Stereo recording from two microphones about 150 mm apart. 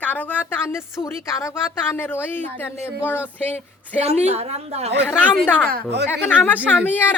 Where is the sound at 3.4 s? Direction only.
10° left (ahead or behind).